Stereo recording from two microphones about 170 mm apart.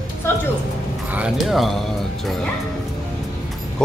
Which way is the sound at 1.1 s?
5° right (ahead or behind).